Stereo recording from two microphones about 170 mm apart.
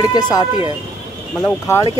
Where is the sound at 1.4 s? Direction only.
15° left (ahead or behind).